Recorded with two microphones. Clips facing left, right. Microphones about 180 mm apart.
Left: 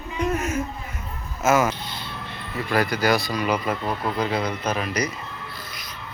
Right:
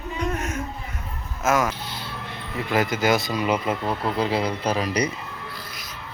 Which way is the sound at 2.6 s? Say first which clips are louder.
Even; 20° right (ahead or behind).